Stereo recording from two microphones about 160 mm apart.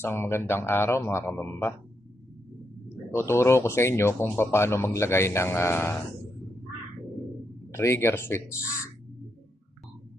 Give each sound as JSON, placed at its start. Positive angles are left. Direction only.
{"t": 0.0, "sound": "speech", "side_deg": 15}
{"t": 3.1, "sound": "speech", "side_deg": 15}
{"t": 7.7, "sound": "speech", "side_deg": 15}